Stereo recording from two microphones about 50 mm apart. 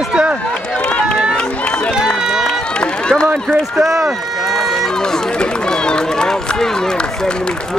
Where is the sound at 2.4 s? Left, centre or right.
Centre.